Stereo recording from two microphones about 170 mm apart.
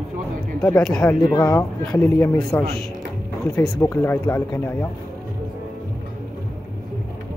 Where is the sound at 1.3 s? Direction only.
20° left (ahead or behind).